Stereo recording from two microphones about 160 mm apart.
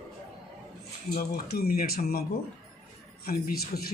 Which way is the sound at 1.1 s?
70° left (ahead or behind).